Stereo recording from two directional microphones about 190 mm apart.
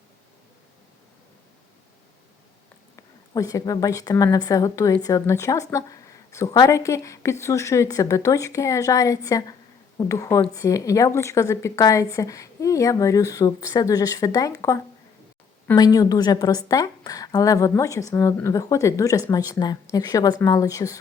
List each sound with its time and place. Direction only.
2.9 s a woman's voice: 15° left (ahead or behind)